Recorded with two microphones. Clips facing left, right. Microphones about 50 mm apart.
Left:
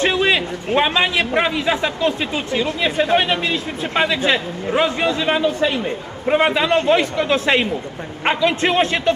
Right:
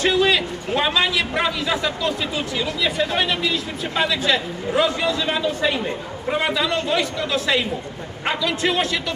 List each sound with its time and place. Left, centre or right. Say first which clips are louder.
0.0 s a man's voice: left 1 dB; left